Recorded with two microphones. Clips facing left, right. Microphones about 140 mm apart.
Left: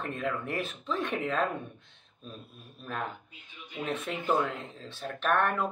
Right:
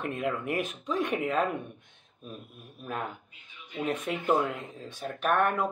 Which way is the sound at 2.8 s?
10° right (ahead or behind).